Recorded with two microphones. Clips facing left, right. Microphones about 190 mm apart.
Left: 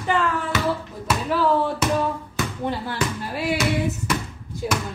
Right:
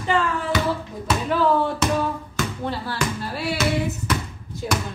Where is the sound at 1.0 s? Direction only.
5° left (ahead or behind).